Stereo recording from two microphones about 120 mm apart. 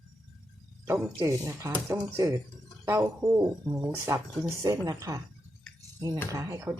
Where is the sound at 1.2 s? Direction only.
25° right (ahead or behind).